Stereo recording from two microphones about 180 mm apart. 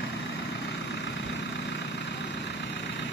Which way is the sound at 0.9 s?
70° left (ahead or behind).